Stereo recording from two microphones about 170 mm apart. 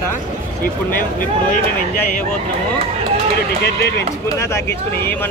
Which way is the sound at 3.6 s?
75° left (ahead or behind).